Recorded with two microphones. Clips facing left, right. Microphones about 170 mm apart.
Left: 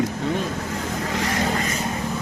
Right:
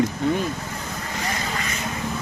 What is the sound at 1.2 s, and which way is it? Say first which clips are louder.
Vehicle: left 4 dB; 80° left.